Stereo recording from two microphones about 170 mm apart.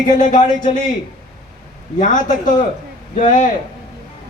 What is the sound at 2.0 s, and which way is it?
Speech, 50° left (ahead or behind).